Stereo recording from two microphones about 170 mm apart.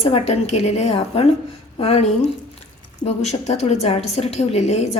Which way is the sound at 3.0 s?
40° left (ahead or behind).